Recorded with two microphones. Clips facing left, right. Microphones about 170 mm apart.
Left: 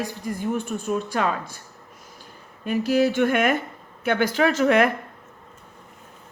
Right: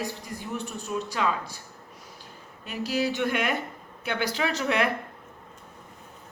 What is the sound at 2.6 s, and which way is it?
Speech, 50° left (ahead or behind).